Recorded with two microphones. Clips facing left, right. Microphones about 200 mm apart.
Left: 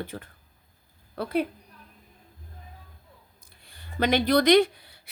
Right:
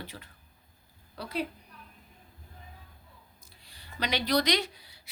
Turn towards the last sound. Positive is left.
turn(degrees=55)  # may be behind; listen again after turning